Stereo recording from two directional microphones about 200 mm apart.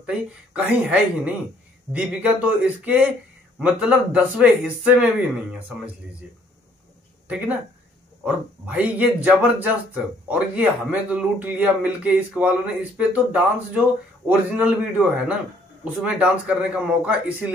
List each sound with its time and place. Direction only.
0.0 s speech: 5° right (ahead or behind)
7.2 s speech: 5° right (ahead or behind)